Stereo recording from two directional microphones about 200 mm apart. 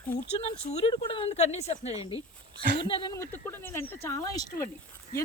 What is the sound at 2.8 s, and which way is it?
Speech, 25° left (ahead or behind).